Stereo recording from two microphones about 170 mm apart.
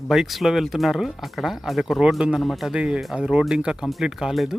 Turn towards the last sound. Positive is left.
turn(degrees=0)  # may be behind; listen again after turning